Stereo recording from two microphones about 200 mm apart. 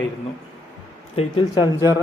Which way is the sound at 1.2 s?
25° left (ahead or behind).